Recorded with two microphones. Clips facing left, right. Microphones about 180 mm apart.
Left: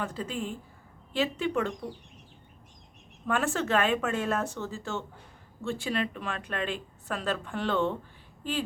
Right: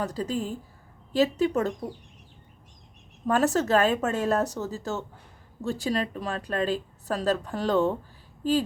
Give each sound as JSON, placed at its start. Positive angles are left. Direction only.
{"t": 0.0, "sound": "speech", "side_deg": -40}
{"t": 3.2, "sound": "speech", "side_deg": -40}